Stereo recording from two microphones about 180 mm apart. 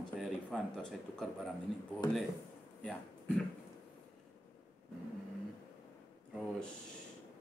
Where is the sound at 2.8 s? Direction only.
Centre (ahead or behind).